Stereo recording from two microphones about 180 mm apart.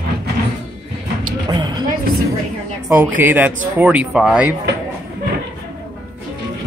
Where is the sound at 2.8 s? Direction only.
10° right (ahead or behind).